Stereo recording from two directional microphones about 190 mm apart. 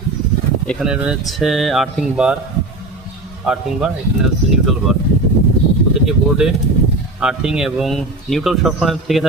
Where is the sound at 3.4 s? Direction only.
5° right (ahead or behind).